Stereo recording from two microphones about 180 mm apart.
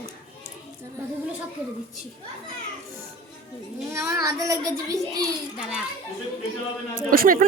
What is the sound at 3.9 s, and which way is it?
A child's voice, 15° right (ahead or behind).